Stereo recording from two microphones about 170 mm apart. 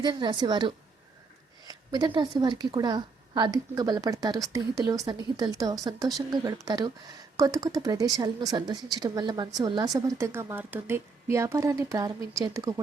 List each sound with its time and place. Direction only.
0.0 s a woman's voice: 25° right (ahead or behind)